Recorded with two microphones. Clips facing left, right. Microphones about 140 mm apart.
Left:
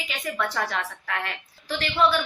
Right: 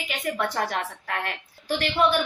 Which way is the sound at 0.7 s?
40° right (ahead or behind).